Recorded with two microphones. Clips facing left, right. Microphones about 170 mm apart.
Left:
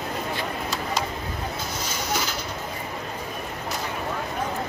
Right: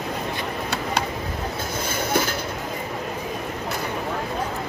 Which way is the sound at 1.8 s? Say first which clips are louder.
Right 6 dB; 55° right (ahead or behind).